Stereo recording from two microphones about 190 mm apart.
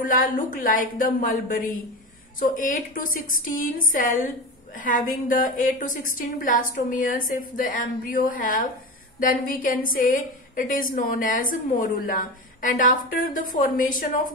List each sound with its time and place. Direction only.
0.1 s a woman's voice: 45° left (ahead or behind)